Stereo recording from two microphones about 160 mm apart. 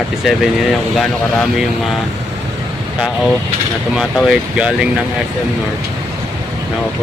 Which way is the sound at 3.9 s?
5° right (ahead or behind).